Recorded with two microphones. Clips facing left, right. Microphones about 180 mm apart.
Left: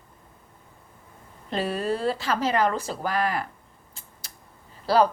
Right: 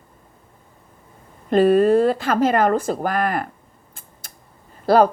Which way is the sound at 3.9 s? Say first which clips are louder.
Right 3 dB; 50° right (ahead or behind).